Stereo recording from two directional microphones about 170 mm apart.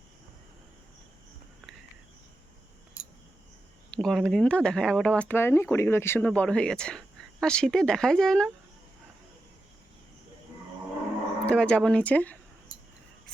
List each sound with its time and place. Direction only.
3.9 s speech: 5° left (ahead or behind)
11.4 s speech: 5° left (ahead or behind)